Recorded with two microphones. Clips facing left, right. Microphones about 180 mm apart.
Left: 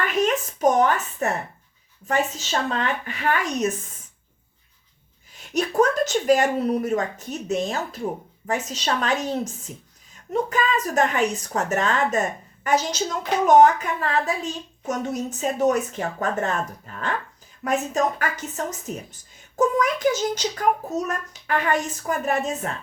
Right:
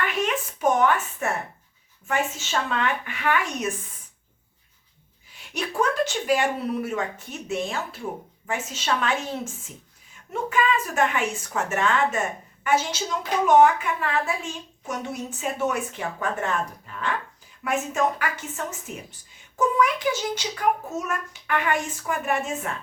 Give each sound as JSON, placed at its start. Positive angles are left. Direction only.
{"t": 0.1, "sound": "a sound", "side_deg": 40}
{"t": 2.0, "sound": "speech", "side_deg": 35}
{"t": 5.3, "sound": "speech", "side_deg": 40}